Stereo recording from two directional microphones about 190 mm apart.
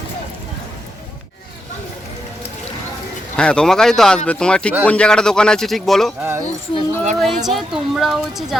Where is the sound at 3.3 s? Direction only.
5° left (ahead or behind).